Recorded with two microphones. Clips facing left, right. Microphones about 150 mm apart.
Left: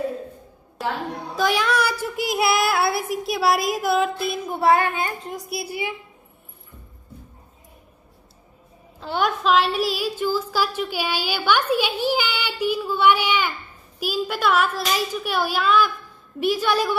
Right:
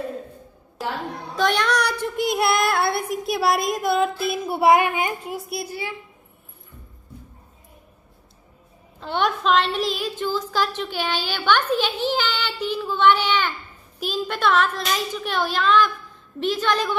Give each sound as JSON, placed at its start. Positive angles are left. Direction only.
{"t": 1.3, "sound": "child singing", "side_deg": 5}
{"t": 4.5, "sound": "a woman's voice", "side_deg": -15}
{"t": 5.7, "sound": "a woman's voice", "side_deg": 15}
{"t": 9.0, "sound": "a woman's voice", "side_deg": 5}